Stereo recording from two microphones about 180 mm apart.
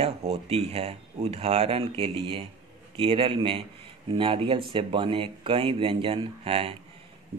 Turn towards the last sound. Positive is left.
turn(degrees=-35)  # may be behind; listen again after turning